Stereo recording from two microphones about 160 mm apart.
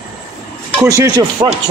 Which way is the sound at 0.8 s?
20° right (ahead or behind).